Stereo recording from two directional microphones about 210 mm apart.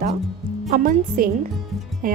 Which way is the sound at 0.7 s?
40° right (ahead or behind).